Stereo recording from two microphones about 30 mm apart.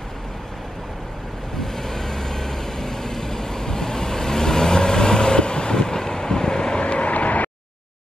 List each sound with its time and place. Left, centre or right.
1.6 s vehicle: centre
6.8 s vehicle: left